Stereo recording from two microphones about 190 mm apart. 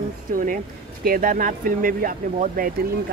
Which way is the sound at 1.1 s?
45° right (ahead or behind).